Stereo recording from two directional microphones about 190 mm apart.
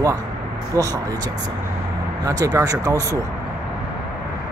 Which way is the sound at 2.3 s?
20° right (ahead or behind).